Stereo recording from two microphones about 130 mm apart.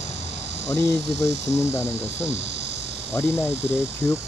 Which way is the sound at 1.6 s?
20° left (ahead or behind).